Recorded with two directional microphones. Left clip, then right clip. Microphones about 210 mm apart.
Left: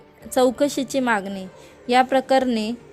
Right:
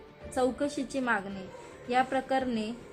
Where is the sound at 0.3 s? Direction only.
40° left (ahead or behind).